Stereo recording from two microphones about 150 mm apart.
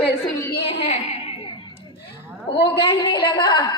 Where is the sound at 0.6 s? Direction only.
40° left (ahead or behind).